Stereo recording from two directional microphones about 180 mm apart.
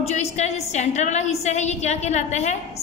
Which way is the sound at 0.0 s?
40° left (ahead or behind).